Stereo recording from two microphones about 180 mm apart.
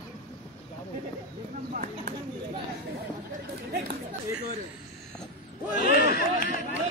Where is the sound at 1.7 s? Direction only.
50° right (ahead or behind).